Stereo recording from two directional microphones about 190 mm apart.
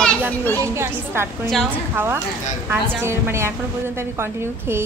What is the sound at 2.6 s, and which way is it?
A woman's voice, 15° right (ahead or behind).